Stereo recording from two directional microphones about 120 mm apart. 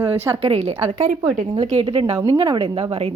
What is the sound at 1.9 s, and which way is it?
Speech, 50° right (ahead or behind).